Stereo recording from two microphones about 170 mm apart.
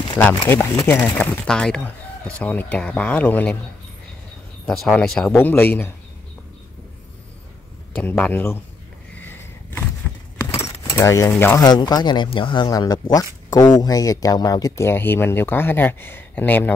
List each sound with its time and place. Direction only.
0.5 s speech: 15° left (ahead or behind)
4.6 s speech: 5° left (ahead or behind)
7.9 s speech: 10° left (ahead or behind)
9.1 s a sound: 10° left (ahead or behind)
10.6 s speech: 15° left (ahead or behind)
11.6 s speech: 25° left (ahead or behind); by 16.7 s 10° left (ahead or behind)